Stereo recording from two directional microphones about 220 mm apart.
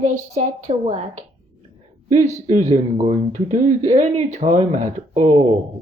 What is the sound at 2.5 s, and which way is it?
Speech, 35° right (ahead or behind).